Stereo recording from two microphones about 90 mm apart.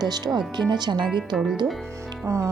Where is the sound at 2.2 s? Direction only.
35° right (ahead or behind).